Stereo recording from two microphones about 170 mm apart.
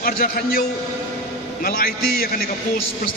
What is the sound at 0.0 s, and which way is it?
Speech, 60° left (ahead or behind).